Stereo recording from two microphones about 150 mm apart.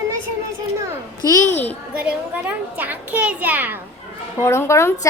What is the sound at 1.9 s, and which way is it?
A child's voice, 10° right (ahead or behind).